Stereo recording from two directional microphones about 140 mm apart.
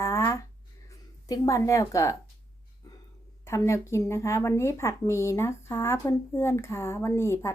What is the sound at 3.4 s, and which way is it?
Speech, 20° left (ahead or behind).